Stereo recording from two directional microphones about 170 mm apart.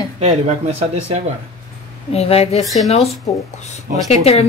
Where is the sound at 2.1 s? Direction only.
35° left (ahead or behind).